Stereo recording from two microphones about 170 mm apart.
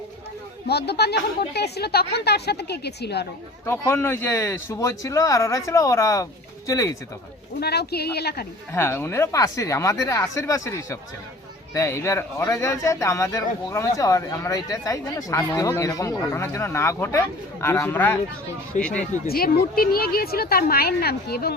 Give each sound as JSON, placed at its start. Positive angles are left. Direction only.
{"t": 0.7, "sound": "speech", "side_deg": 75}
{"t": 3.7, "sound": "speech", "side_deg": 15}
{"t": 7.6, "sound": "speech", "side_deg": 70}
{"t": 8.7, "sound": "speech", "side_deg": 15}
{"t": 18.7, "sound": "speech", "side_deg": 45}
{"t": 19.3, "sound": "a woman's voice", "side_deg": 60}